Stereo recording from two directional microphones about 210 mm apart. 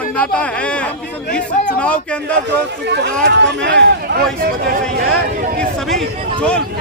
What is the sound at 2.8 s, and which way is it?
Speech, 55° right (ahead or behind).